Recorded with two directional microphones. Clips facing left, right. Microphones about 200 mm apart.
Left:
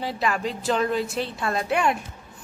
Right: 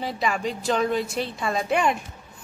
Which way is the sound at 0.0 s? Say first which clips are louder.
Even; centre (ahead or behind).